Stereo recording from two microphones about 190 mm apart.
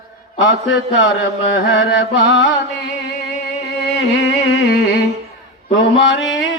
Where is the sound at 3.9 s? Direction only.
70° left (ahead or behind).